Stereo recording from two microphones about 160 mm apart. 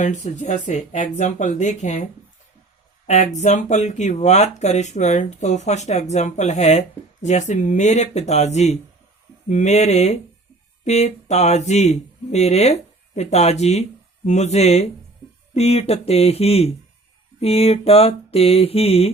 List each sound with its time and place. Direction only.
0.0 s speech: 50° left (ahead or behind)
3.1 s speech: 45° left (ahead or behind)
15.5 s mantra: 40° left (ahead or behind)